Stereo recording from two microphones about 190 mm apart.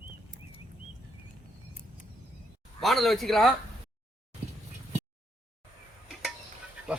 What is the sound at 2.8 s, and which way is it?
Speech, centre (ahead or behind).